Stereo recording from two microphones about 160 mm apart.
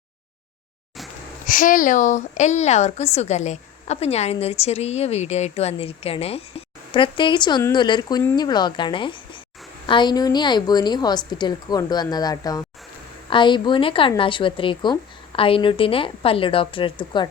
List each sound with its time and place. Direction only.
1.5 s a woman's voice: 55° left (ahead or behind); by 17.2 s 30° left (ahead or behind)